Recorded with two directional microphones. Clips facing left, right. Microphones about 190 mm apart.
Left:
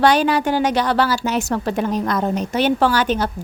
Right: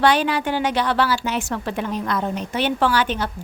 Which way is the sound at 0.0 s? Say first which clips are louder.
Left 3 dB; 40° left (ahead or behind).